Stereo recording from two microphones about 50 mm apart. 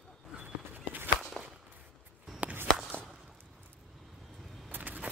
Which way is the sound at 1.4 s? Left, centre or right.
Centre.